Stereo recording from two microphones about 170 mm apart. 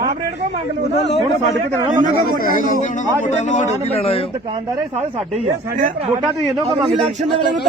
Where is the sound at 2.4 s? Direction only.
55° left (ahead or behind); by 4.2 s 35° left (ahead or behind).